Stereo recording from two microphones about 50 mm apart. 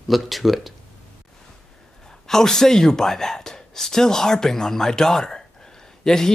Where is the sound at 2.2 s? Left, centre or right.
Centre.